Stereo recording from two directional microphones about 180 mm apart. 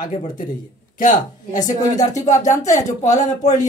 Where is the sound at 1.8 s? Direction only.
20° left (ahead or behind).